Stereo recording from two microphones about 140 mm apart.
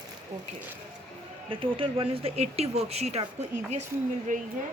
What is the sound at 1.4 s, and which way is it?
Speech, 40° right (ahead or behind).